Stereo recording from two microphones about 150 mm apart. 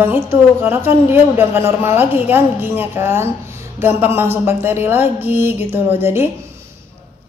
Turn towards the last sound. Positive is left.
turn(degrees=-15)  # may be behind; listen again after turning